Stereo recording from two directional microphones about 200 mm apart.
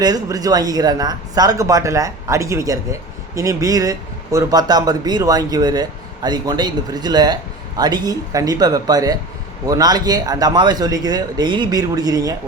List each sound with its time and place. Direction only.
0.0 s speech: 20° right (ahead or behind)